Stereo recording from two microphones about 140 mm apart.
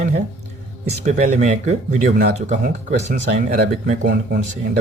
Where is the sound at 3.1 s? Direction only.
80° right.